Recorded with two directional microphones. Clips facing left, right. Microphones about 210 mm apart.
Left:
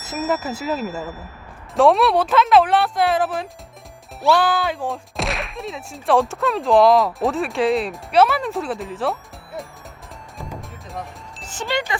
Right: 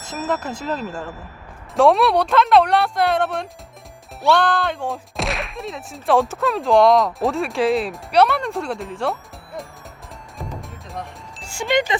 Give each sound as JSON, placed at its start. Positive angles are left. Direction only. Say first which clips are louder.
{"t": 0.0, "sound": "speech", "louder": "left 1 dB", "side_deg": 5}
{"t": 10.3, "sound": "music", "louder": "right 1 dB", "side_deg": 0}
{"t": 11.4, "sound": "speech", "louder": "right 4 dB", "side_deg": -15}